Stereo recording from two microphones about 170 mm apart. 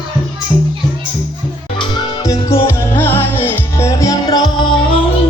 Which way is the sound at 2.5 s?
15° left (ahead or behind).